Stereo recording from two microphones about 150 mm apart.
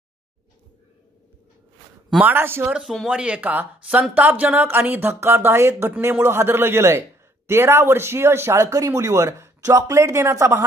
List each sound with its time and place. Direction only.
2.0 s speech: 10° right (ahead or behind)
2.8 s speech: centre (ahead or behind); by 10.6 s 20° right (ahead or behind)